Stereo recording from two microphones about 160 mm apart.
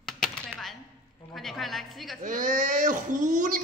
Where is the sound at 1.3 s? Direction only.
Centre (ahead or behind).